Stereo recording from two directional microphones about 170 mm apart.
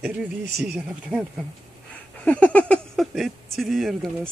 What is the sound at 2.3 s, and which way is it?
Speech, 10° left (ahead or behind).